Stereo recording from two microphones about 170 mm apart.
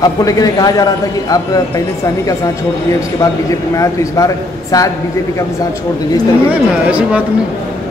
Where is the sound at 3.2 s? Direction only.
20° left (ahead or behind).